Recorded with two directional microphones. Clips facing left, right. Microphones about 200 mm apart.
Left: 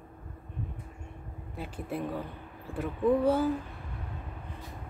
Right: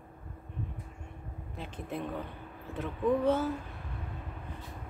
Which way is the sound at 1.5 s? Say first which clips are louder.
Left 3 dB; 10° left (ahead or behind).